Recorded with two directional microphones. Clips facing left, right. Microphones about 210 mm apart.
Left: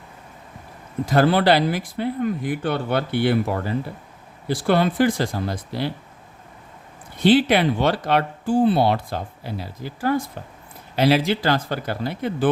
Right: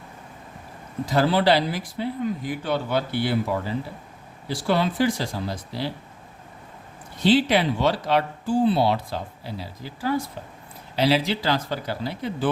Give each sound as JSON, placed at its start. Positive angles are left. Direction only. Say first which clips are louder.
{"t": 1.0, "sound": "speech", "louder": "left 3 dB", "side_deg": 55}
{"t": 7.3, "sound": "speech", "louder": "left 3 dB", "side_deg": 55}